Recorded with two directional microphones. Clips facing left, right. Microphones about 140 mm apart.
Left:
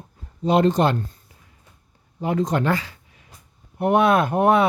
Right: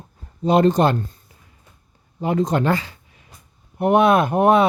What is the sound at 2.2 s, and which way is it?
Speech, 25° right (ahead or behind).